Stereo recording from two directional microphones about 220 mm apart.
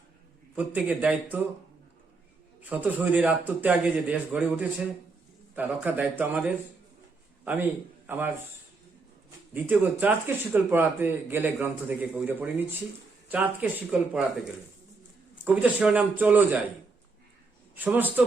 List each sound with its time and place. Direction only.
0.5 s a man's voice: 5° right (ahead or behind)
2.6 s a man's voice: 5° right (ahead or behind)
9.6 s speech: 10° right (ahead or behind)
15.4 s a man's voice: 5° right (ahead or behind)
17.7 s speech: 10° right (ahead or behind)